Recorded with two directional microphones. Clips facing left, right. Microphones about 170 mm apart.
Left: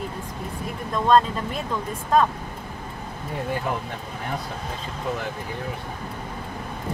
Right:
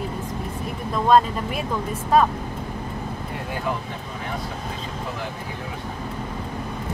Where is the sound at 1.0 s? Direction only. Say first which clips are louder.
Right 1 dB; 10° right (ahead or behind).